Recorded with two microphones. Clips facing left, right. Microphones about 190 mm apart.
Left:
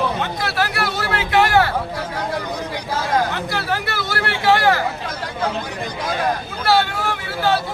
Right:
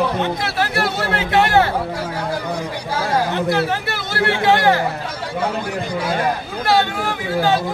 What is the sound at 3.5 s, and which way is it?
A man's voice, 20° right (ahead or behind).